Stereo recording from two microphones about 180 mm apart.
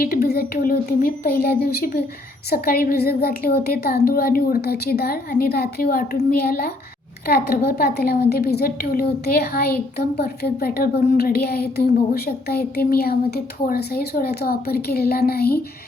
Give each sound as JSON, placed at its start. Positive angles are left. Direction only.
{"t": 0.0, "sound": "speech", "side_deg": 55}